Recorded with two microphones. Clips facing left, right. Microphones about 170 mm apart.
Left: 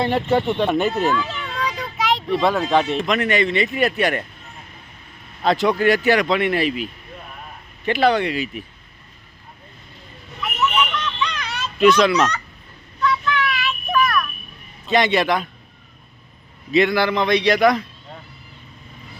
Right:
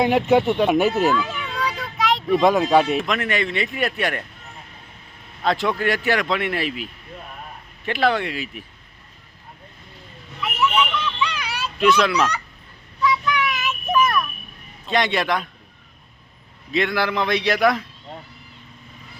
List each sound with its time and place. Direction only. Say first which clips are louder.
0.0 s speech: right 2 dB; 10° right (ahead or behind)
2.3 s speech: right 3 dB; 15° right (ahead or behind)
5.4 s speech: left 4 dB; centre (ahead or behind)
10.4 s a sound: even; 10° right (ahead or behind)
11.8 s speech: left 3 dB; centre (ahead or behind)
13.0 s child singing: even; 10° right (ahead or behind)
14.8 s speech: left 3 dB; centre (ahead or behind)
16.7 s speech: left 4 dB; centre (ahead or behind)